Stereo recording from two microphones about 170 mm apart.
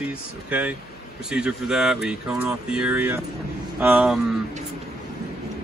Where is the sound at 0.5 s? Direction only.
10° right (ahead or behind).